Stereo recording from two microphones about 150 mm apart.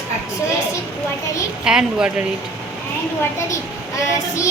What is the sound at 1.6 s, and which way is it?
Speech, 5° right (ahead or behind).